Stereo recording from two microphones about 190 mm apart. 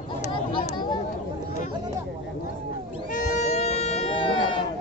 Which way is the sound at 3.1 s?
40° left (ahead or behind).